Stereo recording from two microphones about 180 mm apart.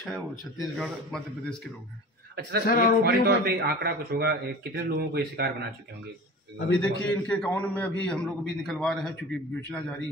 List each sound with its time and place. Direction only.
0.0 s speech: centre (ahead or behind)
2.6 s a man's voice: 55° left (ahead or behind)
3.1 s a man's voice: 65° right (ahead or behind)
6.7 s a man's voice: 5° left (ahead or behind)